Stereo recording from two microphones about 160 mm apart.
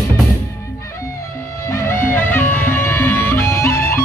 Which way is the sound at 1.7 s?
15° left (ahead or behind).